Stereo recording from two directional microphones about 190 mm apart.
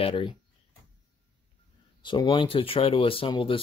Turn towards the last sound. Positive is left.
turn(degrees=25)  # may be behind; listen again after turning